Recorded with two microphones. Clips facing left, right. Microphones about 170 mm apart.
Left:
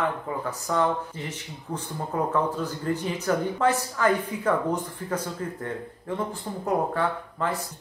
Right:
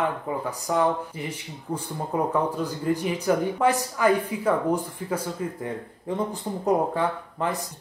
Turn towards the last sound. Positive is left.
turn(degrees=-15)  # may be behind; listen again after turning